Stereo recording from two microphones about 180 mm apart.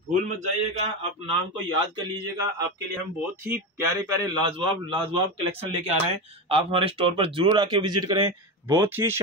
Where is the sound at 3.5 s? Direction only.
15° right (ahead or behind).